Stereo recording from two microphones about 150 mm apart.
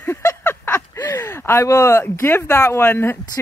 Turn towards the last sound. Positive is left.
turn(degrees=15)  # may be behind; listen again after turning